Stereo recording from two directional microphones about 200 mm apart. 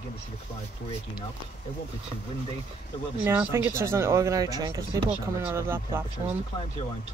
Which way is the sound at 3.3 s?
10° right (ahead or behind).